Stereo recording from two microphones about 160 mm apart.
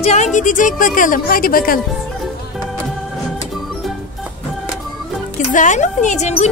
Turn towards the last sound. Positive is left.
turn(degrees=45)  # may be behind; listen again after turning